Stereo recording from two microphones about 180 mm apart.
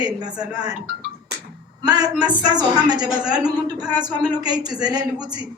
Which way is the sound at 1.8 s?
20° right (ahead or behind).